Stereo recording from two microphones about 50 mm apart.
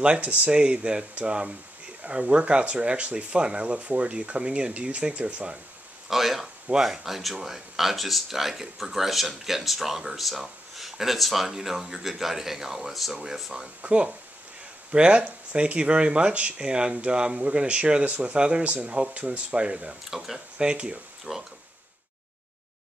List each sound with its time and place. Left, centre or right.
0.0 s speech: right
6.0 s speech: centre
13.8 s speech: right
20.1 s speech: centre
20.5 s speech: centre